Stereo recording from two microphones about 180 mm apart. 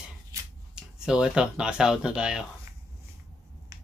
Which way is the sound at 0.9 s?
5° right (ahead or behind).